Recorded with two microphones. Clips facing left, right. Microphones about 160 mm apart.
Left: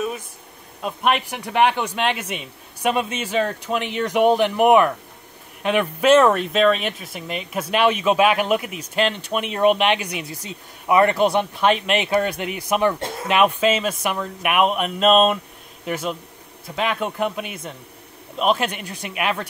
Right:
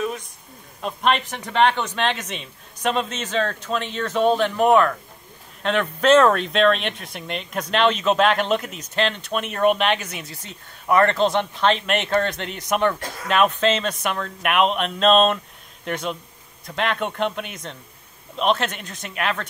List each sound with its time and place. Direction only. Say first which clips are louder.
0.8 s speech: even; 10° left (ahead or behind)
13.0 s speech: left 5 dB; 25° left (ahead or behind)
13.3 s speech: left 1 dB; 10° left (ahead or behind)